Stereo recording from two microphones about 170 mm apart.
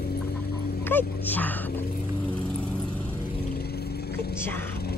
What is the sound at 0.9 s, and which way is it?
Speech, 10° left (ahead or behind).